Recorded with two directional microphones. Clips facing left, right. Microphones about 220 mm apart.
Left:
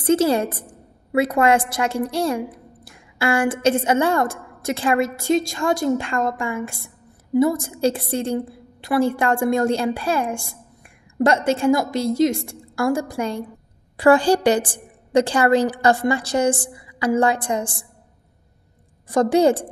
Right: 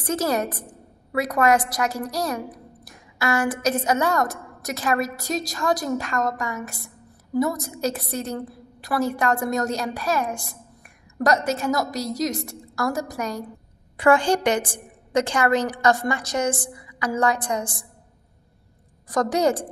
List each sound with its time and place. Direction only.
0.0 s a woman's voice: 30° left (ahead or behind)
19.0 s a woman's voice: 25° left (ahead or behind)